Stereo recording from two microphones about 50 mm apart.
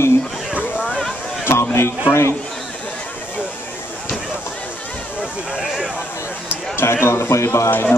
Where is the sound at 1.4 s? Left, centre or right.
Left.